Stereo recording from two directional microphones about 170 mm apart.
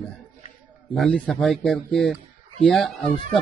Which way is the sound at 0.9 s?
5° left (ahead or behind).